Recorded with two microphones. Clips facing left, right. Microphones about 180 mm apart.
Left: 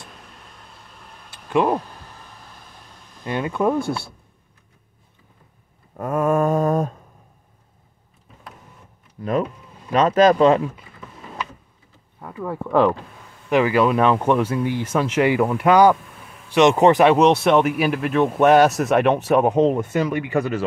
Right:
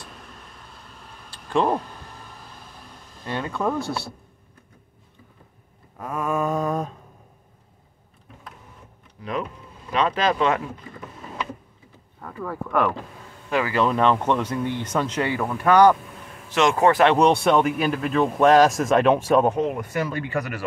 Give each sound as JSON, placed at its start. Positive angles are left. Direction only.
{"t": 1.5, "sound": "speech", "side_deg": 10}
{"t": 3.3, "sound": "speech", "side_deg": 15}
{"t": 5.9, "sound": "mantra", "side_deg": 50}
{"t": 9.2, "sound": "speech", "side_deg": 45}
{"t": 9.9, "sound": "mantra", "side_deg": 45}
{"t": 12.4, "sound": "speech", "side_deg": 30}
{"t": 17.1, "sound": "speech", "side_deg": 0}
{"t": 19.5, "sound": "speech", "side_deg": 25}